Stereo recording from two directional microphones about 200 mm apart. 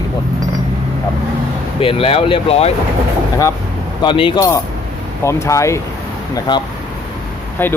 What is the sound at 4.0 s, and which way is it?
Speech, 25° left (ahead or behind).